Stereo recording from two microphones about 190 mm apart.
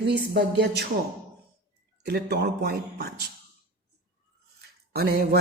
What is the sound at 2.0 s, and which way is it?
Speech, 60° right (ahead or behind).